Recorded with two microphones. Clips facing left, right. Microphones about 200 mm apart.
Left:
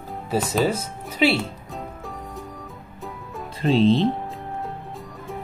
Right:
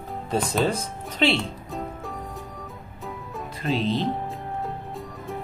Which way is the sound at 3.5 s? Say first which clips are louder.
Left 7 dB; 30° left (ahead or behind).